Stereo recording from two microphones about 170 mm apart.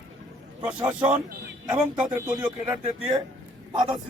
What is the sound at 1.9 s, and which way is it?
Speech, 10° right (ahead or behind).